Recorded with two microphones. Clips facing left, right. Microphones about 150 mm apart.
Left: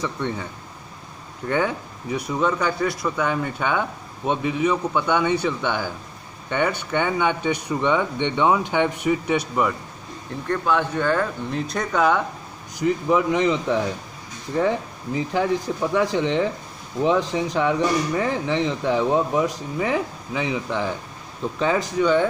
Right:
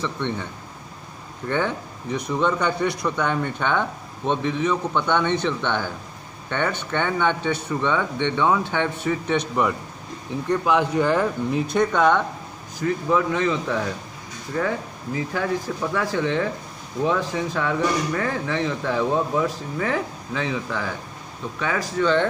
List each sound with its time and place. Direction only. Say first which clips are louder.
0.0 s speech: even; 10° left (ahead or behind)
1.5 s speech: left 1 dB; 10° left (ahead or behind)
10.5 s speech: right 2 dB; 5° right (ahead or behind)
12.7 s speech: left 2 dB; 15° left (ahead or behind)
15.1 s speech: left 3 dB; 20° left (ahead or behind)